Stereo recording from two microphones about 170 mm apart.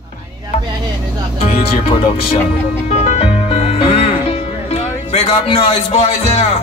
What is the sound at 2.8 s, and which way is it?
Music, 40° left (ahead or behind).